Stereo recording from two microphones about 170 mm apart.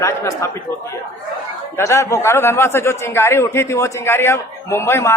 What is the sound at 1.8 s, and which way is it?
A man's voice, 15° left (ahead or behind).